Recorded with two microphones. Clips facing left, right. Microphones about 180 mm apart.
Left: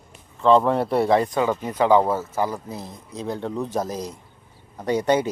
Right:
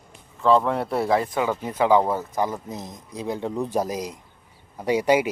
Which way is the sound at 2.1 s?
15° right (ahead or behind).